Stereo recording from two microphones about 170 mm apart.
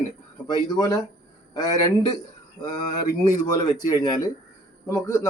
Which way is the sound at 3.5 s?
25° left (ahead or behind).